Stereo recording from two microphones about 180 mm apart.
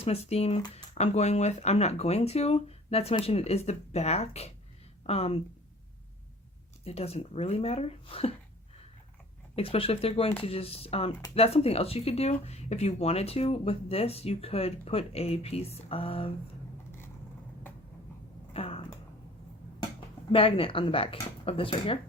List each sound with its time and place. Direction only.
0.0 s speech: 35° left (ahead or behind)
6.8 s speech: 35° left (ahead or behind)
9.6 s speech: 30° left (ahead or behind)
18.5 s a sound: 30° left (ahead or behind)
20.3 s speech: 30° left (ahead or behind)